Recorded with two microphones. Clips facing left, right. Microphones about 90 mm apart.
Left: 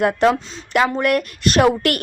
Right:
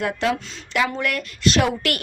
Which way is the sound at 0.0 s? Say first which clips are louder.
Left 7 dB; 50° left (ahead or behind).